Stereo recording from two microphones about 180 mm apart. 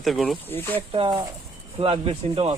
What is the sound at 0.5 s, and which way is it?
Speech, 10° left (ahead or behind).